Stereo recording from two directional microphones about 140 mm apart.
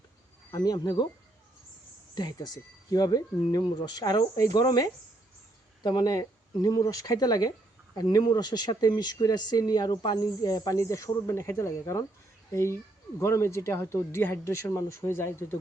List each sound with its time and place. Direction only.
0.5 s speech: 30° left (ahead or behind)
2.1 s speech: 30° left (ahead or behind)
13.1 s speech: 20° left (ahead or behind)